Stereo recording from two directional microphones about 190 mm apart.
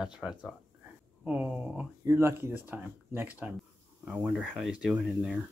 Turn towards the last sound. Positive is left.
turn(degrees=-5)  # may be behind; listen again after turning